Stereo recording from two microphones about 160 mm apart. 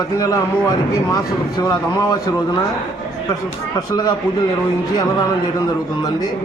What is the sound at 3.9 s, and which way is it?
Speech, 25° left (ahead or behind).